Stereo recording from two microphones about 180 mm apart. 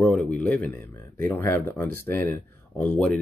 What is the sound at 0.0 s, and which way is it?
Speech, centre (ahead or behind).